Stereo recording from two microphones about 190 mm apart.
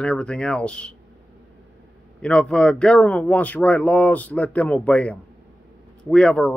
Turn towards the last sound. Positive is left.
turn(degrees=5)  # may be behind; listen again after turning